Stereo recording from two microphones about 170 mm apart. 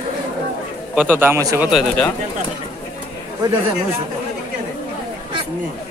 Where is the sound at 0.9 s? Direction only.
10° right (ahead or behind).